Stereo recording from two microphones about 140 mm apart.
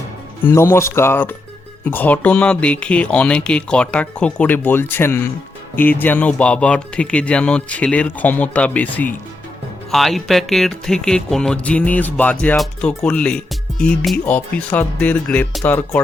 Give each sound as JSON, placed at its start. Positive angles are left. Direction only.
{"t": 0.4, "sound": "speech", "side_deg": 20}